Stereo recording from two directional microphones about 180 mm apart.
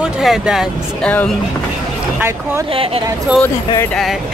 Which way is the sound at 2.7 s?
30° right (ahead or behind).